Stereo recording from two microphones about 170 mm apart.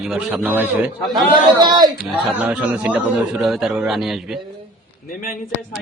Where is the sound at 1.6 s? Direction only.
25° right (ahead or behind).